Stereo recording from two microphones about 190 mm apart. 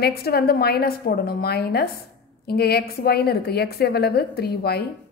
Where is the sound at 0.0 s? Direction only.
55° left (ahead or behind).